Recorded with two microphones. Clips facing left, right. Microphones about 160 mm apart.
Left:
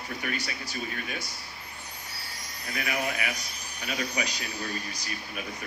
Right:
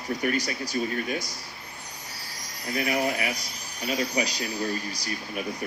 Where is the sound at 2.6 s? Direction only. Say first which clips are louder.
Right 5 dB; 35° right (ahead or behind).